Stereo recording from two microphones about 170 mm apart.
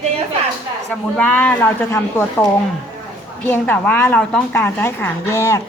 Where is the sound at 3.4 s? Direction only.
10° left (ahead or behind).